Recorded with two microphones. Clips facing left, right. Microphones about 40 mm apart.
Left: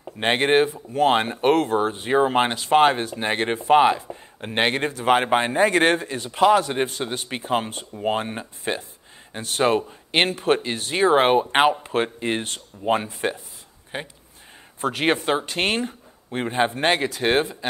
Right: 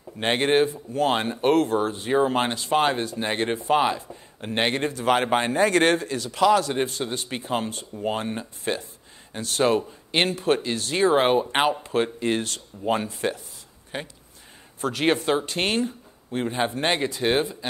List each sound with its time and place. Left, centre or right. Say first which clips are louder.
0.2 s speech: left 2 dB; left
2.5 s speech: left 5 dB; left
4.4 s speech: left 2 dB; left